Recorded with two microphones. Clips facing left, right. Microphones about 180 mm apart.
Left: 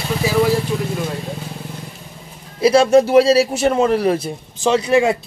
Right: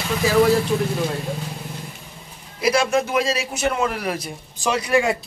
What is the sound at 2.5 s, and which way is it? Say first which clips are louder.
A man's voice: left 8 dB; 30° left (ahead or behind).